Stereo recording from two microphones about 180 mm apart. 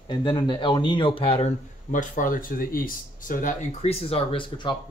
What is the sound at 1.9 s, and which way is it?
Speech, 45° left (ahead or behind).